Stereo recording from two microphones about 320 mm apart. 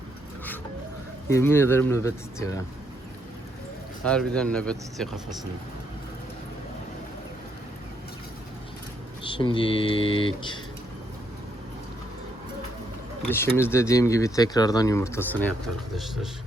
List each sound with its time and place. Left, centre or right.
1.3 s speech: centre
4.0 s speech: centre
9.2 s speech: centre
13.2 s speech: centre